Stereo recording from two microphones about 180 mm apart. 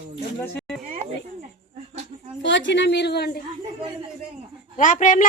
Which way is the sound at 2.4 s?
85° left.